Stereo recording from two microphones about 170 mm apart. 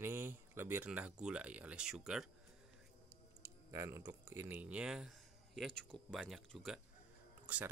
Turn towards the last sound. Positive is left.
turn(degrees=-10)  # may be behind; listen again after turning